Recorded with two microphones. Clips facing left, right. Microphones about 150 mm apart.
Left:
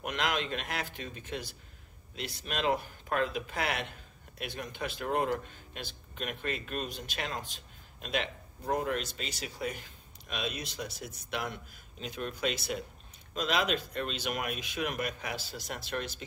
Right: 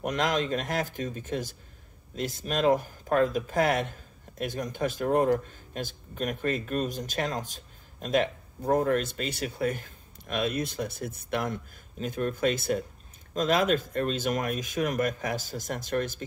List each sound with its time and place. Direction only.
0.0 s speech: 40° right (ahead or behind)